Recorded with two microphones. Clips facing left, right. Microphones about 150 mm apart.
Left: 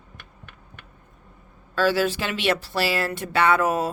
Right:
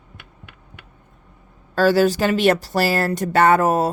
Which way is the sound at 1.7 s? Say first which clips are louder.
Right 6 dB; 40° right (ahead or behind).